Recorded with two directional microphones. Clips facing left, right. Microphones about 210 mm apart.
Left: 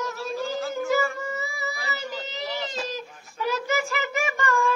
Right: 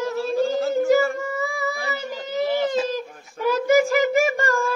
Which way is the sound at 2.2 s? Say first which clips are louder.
Right 10 dB; 50° right (ahead or behind).